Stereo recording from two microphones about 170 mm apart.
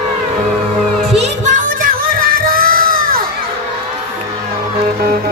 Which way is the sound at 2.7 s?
55° right (ahead or behind).